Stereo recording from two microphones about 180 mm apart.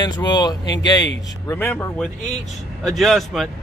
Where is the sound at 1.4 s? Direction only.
10° left (ahead or behind).